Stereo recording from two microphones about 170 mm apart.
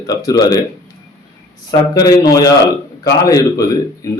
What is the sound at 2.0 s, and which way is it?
A man's voice, 20° left (ahead or behind).